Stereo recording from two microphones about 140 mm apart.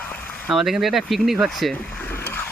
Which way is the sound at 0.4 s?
Centre (ahead or behind).